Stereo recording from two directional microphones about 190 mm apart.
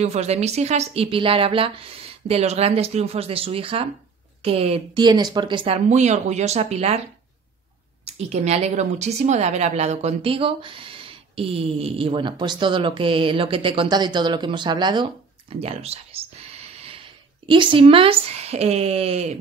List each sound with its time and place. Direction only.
0.0 s a woman's voice: 35° right (ahead or behind)
5.9 s a woman's voice: 40° right (ahead or behind)
8.0 s a woman's voice: 35° right (ahead or behind)
15.5 s a sound: 30° right (ahead or behind)
17.5 s a woman's voice: 25° right (ahead or behind)